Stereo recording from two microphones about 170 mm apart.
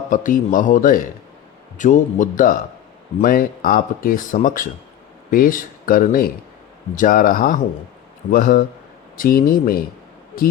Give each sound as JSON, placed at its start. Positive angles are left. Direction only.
{"t": 0.1, "sound": "speech", "side_deg": 50}